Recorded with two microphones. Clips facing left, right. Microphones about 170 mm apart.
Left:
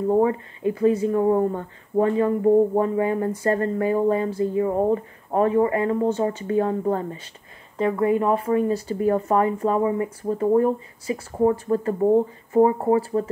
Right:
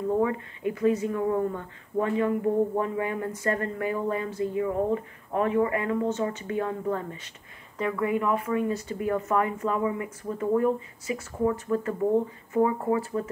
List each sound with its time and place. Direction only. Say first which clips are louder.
0.1 s speech: left 6 dB; 30° left (ahead or behind)